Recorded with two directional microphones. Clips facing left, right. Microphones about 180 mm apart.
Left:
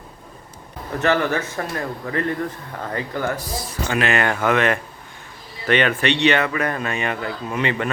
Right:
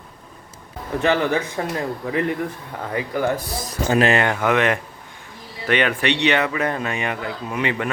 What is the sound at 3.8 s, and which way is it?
Speech, 35° right (ahead or behind).